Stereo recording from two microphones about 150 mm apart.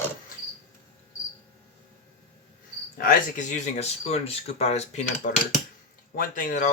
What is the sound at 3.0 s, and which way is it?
Speech, 60° left (ahead or behind).